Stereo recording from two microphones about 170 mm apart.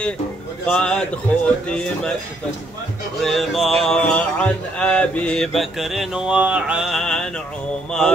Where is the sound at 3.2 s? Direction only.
Centre (ahead or behind).